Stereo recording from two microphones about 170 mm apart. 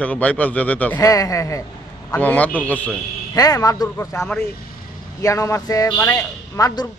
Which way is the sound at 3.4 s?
20° left (ahead or behind).